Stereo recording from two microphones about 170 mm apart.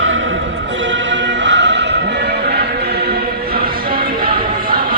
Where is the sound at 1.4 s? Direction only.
90° right.